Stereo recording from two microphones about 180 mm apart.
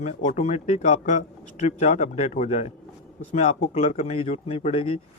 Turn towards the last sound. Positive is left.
turn(degrees=30)  # may be behind; listen again after turning